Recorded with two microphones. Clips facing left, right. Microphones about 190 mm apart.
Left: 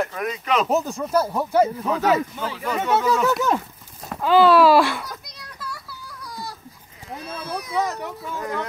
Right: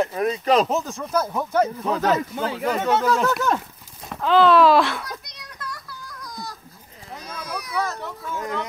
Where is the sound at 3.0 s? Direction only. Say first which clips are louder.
Left 1 dB; 5° left (ahead or behind).